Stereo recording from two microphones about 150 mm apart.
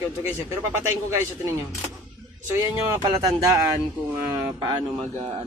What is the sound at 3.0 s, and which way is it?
A man's voice, 25° right (ahead or behind).